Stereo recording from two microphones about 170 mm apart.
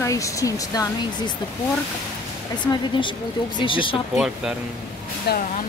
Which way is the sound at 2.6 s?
25° left (ahead or behind).